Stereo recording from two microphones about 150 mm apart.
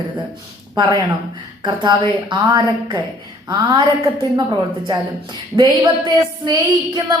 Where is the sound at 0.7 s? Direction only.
25° right (ahead or behind).